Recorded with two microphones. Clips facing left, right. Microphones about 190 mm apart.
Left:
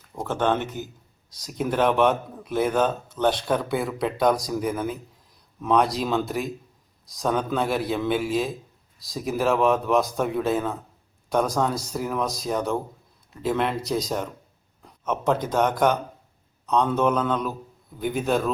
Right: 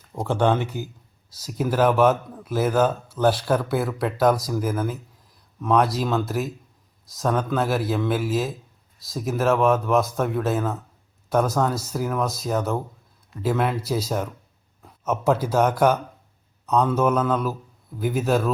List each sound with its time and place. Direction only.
0.2 s a man's voice: 10° right (ahead or behind)